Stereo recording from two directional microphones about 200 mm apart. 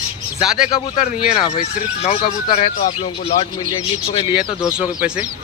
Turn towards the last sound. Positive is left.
turn(degrees=-5)  # may be behind; listen again after turning